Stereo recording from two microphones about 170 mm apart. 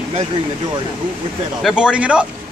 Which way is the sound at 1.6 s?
5° right (ahead or behind).